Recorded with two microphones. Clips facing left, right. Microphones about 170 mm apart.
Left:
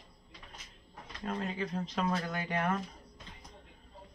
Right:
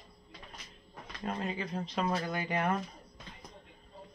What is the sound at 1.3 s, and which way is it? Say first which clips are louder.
Speech: even; 15° right (ahead or behind).